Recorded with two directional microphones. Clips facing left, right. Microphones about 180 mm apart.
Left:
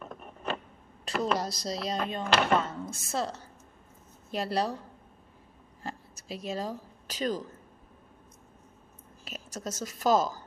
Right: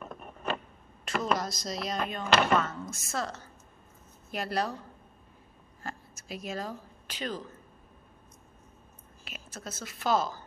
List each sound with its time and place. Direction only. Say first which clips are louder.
1.0 s a woman's voice: left 1 dB; 35° left (ahead or behind)
5.9 s a sound: left 1 dB; 30° left (ahead or behind)
9.2 s a woman's voice: left 5 dB; 40° left (ahead or behind)